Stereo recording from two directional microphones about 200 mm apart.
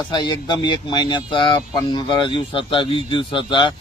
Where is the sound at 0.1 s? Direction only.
20° left (ahead or behind).